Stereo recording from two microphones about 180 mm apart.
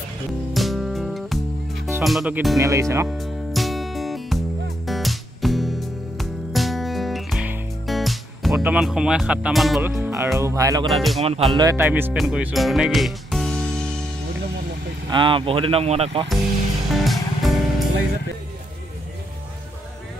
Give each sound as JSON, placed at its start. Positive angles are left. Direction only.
{"t": 0.5, "sound": "music", "side_deg": 0}
{"t": 2.0, "sound": "speech", "side_deg": -5}
{"t": 2.6, "sound": "speech", "side_deg": -15}
{"t": 3.1, "sound": "music", "side_deg": 0}
{"t": 9.8, "sound": "speech", "side_deg": -15}
{"t": 10.9, "sound": "speech", "side_deg": 0}
{"t": 11.1, "sound": "speech", "side_deg": -35}
{"t": 11.5, "sound": "speech", "side_deg": -15}
{"t": 15.0, "sound": "speech", "side_deg": -25}
{"t": 16.9, "sound": "music", "side_deg": 0}